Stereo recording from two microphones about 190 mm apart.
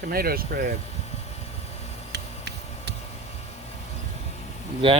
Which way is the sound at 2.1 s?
60° right (ahead or behind).